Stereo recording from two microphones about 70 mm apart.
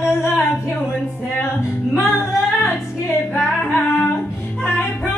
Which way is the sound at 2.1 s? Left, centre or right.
Left.